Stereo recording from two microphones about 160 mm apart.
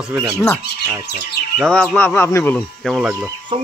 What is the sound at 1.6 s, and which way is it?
Speech, 5° left (ahead or behind).